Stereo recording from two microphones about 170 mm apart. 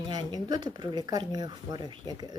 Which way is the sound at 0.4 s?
25° right (ahead or behind).